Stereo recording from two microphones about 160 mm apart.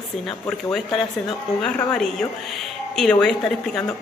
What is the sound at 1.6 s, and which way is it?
A woman's voice, 5° left (ahead or behind).